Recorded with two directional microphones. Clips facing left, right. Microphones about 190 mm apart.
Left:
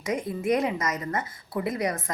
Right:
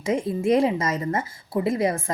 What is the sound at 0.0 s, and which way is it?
A woman's voice, 25° right (ahead or behind).